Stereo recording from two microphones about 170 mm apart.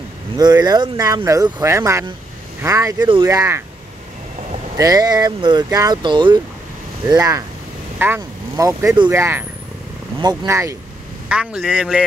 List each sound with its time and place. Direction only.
0.4 s speech: 25° right (ahead or behind)
4.7 s speech: 20° right (ahead or behind)
11.2 s speech: 5° right (ahead or behind)